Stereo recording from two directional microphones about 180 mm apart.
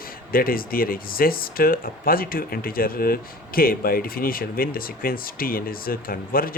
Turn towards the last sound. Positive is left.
turn(degrees=55)  # may be behind; listen again after turning